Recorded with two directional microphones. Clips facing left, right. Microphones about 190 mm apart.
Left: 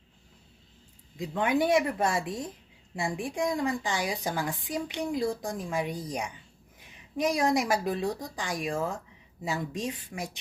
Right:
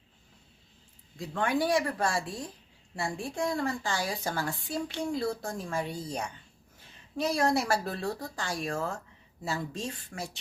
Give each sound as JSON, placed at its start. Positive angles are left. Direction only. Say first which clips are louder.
{"t": 1.1, "sound": "a woman's voice", "louder": "left 2 dB", "side_deg": 20}